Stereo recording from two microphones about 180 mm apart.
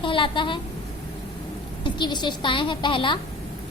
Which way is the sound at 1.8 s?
25° left (ahead or behind).